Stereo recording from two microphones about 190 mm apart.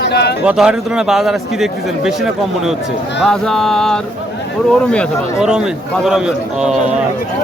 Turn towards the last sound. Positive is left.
turn(degrees=0)  # may be behind; listen again after turning